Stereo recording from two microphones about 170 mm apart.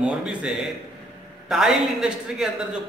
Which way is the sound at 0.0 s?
5° right (ahead or behind).